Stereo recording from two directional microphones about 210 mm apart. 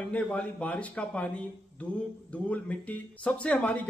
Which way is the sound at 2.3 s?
5° left (ahead or behind).